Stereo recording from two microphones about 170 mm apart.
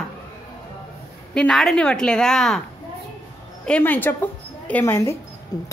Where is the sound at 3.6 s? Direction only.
10° left (ahead or behind).